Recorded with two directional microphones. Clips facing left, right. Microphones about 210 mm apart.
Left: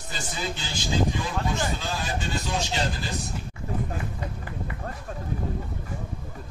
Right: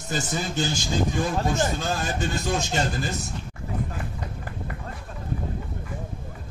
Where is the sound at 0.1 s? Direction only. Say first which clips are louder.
Right 5 dB; 45° right (ahead or behind).